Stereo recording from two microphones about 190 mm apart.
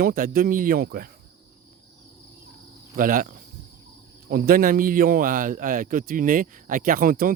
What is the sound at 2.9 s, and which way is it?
A man's voice, 45° right (ahead or behind).